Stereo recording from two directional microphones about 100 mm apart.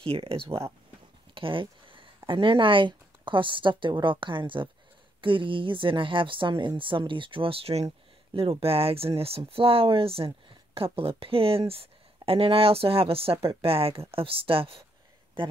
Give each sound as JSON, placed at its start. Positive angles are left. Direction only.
{"t": 0.0, "sound": "speech", "side_deg": -70}
{"t": 1.3, "sound": "a sound", "side_deg": -60}
{"t": 2.1, "sound": "speech", "side_deg": -55}
{"t": 8.4, "sound": "speech", "side_deg": -75}